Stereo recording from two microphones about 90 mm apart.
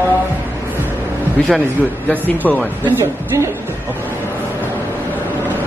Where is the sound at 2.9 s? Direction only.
30° right (ahead or behind).